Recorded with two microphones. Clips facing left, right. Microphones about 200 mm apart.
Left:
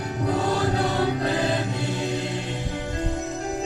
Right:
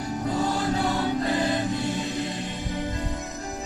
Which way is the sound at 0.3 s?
65° left (ahead or behind).